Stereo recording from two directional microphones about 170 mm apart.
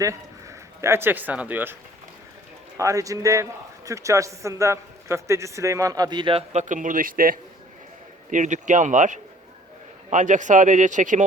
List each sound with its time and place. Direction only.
0.0 s speech: 20° right (ahead or behind)
2.7 s a man's voice: 20° right (ahead or behind)
6.5 s speech: 45° right (ahead or behind)